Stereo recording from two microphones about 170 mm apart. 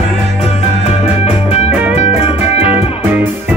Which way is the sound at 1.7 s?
10° right (ahead or behind).